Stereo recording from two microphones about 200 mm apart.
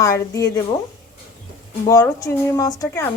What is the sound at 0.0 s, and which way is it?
Speech, 15° left (ahead or behind).